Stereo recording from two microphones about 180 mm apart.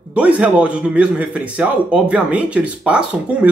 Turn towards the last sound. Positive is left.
turn(degrees=-5)  # may be behind; listen again after turning